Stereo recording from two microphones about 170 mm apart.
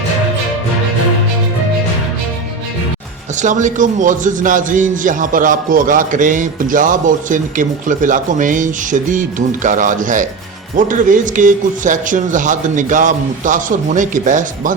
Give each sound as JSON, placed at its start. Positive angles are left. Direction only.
{"t": 3.3, "sound": "a man's voice", "side_deg": -45}